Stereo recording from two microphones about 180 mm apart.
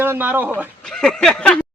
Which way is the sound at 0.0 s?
10° right (ahead or behind).